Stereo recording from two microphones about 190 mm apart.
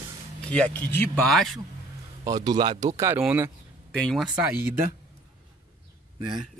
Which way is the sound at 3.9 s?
Centre (ahead or behind).